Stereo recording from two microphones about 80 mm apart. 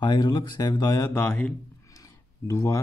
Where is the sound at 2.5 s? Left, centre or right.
Left.